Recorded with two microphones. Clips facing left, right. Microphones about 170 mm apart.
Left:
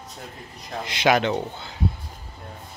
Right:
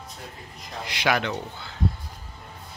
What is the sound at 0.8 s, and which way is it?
Speech, 20° left (ahead or behind).